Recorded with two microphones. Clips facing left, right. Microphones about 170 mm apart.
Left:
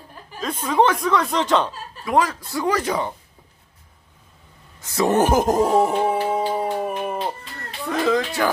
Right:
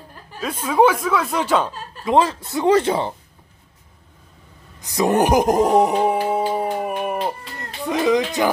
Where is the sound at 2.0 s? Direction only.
25° right (ahead or behind).